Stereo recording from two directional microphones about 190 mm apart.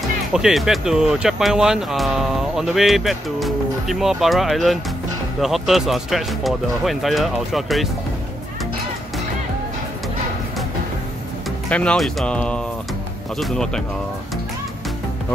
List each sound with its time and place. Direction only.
0.3 s speech: centre (ahead or behind)
11.7 s speech: 5° left (ahead or behind)